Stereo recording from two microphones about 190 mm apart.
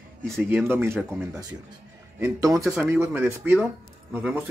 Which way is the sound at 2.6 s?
5° right (ahead or behind).